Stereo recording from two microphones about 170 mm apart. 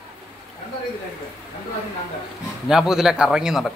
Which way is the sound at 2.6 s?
5° right (ahead or behind).